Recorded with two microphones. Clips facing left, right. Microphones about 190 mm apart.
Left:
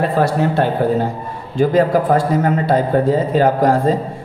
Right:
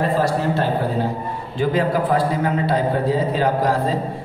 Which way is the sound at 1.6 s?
45° left (ahead or behind).